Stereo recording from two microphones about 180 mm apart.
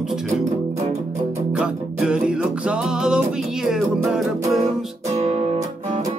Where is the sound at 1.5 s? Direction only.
5° right (ahead or behind).